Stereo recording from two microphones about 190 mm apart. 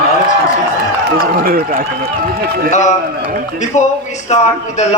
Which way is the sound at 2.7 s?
40° left (ahead or behind).